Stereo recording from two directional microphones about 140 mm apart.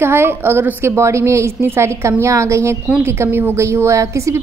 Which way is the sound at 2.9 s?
5° right (ahead or behind).